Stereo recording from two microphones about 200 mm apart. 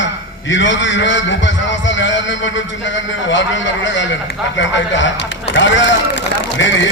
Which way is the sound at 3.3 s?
65° left (ahead or behind).